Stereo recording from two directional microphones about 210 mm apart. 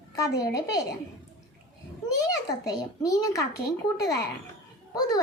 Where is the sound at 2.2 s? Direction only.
15° left (ahead or behind).